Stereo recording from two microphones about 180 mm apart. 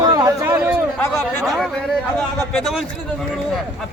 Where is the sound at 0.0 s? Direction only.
20° right (ahead or behind).